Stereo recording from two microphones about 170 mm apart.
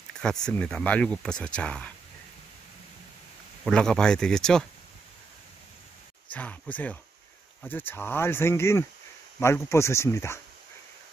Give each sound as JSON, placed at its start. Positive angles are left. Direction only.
{"t": 0.5, "sound": "speech", "side_deg": 5}
{"t": 3.6, "sound": "speech", "side_deg": 5}
{"t": 6.3, "sound": "speech", "side_deg": 10}